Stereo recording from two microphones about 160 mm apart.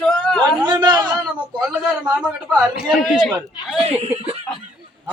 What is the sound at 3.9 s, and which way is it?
Snicker, 40° right (ahead or behind).